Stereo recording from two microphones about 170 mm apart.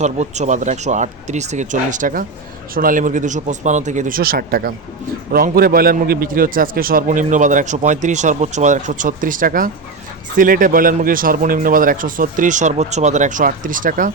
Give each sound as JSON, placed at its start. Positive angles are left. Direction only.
{"t": 0.0, "sound": "a man's voice", "side_deg": -45}